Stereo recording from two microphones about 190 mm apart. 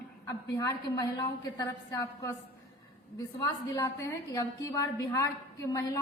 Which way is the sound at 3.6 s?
15° left (ahead or behind).